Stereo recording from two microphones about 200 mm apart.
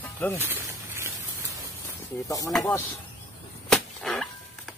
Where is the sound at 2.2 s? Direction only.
15° left (ahead or behind).